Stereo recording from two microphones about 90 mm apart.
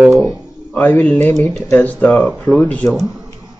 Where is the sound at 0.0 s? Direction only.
5° right (ahead or behind).